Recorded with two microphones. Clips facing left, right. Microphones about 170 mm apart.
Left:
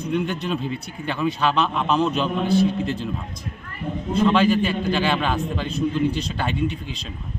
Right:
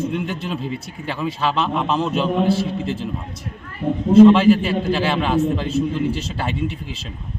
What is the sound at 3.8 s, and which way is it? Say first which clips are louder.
Speech: right 8 dB; 55° right (ahead or behind).